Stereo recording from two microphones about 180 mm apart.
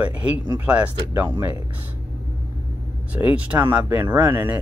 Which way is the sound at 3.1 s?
10° right (ahead or behind).